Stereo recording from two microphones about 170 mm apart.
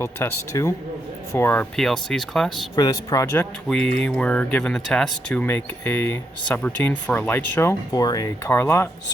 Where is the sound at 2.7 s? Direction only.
25° left (ahead or behind).